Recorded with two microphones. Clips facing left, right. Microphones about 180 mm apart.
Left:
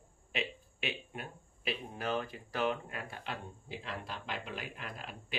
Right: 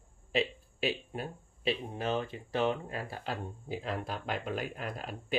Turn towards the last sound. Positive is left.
turn(degrees=-45)  # may be behind; listen again after turning